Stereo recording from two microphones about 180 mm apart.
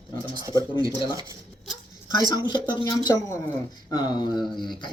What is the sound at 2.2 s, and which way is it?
Speech, 25° left (ahead or behind).